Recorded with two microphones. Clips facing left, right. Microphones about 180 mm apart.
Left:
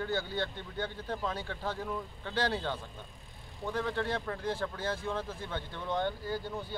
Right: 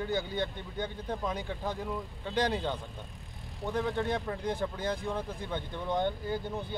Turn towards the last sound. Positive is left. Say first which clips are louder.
# right 2 dB
turn(degrees=-20)  # may be behind; listen again after turning